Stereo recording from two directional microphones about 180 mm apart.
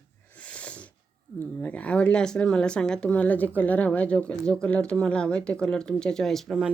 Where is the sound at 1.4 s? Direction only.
10° left (ahead or behind).